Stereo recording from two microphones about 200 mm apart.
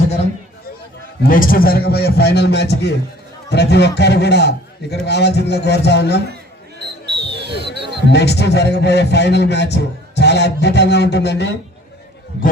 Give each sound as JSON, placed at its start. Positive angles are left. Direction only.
{"t": 1.2, "sound": "a man's voice", "side_deg": 45}
{"t": 7.0, "sound": "a sound", "side_deg": -55}
{"t": 8.0, "sound": "a man's voice", "side_deg": 55}